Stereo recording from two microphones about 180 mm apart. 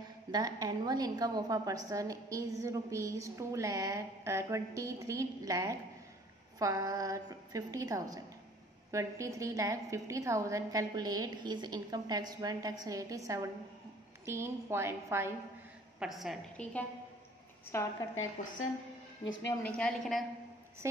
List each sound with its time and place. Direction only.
0.3 s a woman's voice: 20° right (ahead or behind)
16.0 s a woman's voice: centre (ahead or behind)
17.7 s a woman's voice: 15° left (ahead or behind)
19.6 s a woman's voice: 5° left (ahead or behind)
20.8 s a woman's voice: 15° right (ahead or behind)